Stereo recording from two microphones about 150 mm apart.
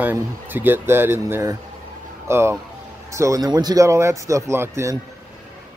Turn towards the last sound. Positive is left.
turn(degrees=-15)  # may be behind; listen again after turning